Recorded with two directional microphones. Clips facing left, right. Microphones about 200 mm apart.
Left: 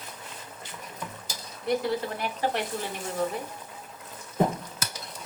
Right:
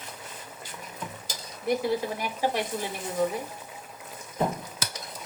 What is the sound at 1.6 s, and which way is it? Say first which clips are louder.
Speech: right 1 dB; 10° right (ahead or behind).